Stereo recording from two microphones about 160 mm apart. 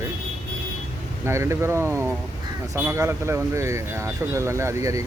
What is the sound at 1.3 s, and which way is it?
Speech, 15° right (ahead or behind).